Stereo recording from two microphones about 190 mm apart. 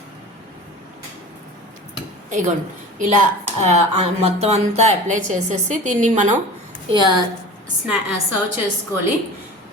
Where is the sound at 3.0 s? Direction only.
40° right (ahead or behind).